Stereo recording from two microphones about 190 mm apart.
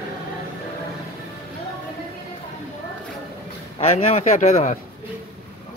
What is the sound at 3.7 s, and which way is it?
Speech, 35° left (ahead or behind).